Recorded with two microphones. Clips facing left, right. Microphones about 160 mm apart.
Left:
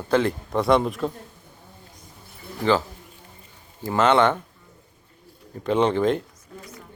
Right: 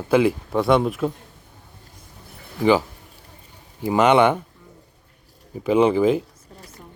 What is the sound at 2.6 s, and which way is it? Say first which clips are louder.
Speech: right 4 dB; 10° right (ahead or behind).